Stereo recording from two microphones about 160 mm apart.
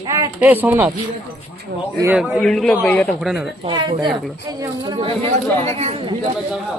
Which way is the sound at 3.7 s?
30° right (ahead or behind).